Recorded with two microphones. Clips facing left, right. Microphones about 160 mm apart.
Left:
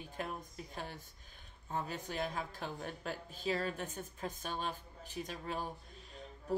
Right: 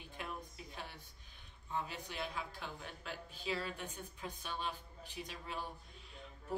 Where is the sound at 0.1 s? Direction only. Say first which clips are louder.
Left 3 dB; 45° left (ahead or behind).